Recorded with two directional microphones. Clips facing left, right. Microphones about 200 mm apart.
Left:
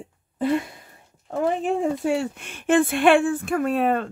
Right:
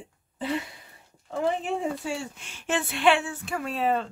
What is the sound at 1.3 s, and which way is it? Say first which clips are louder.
Speech: left 4 dB; 55° left (ahead or behind).